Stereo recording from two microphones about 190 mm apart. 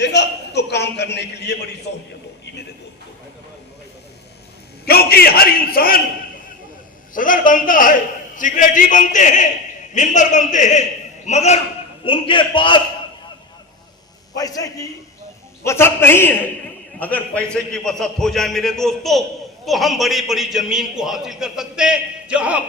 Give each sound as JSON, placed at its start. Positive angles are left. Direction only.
{"t": 0.0, "sound": "a man's voice", "side_deg": 65}
{"t": 4.9, "sound": "a man's voice", "side_deg": 55}
{"t": 7.1, "sound": "a man's voice", "side_deg": 45}
{"t": 14.3, "sound": "a man's voice", "side_deg": 20}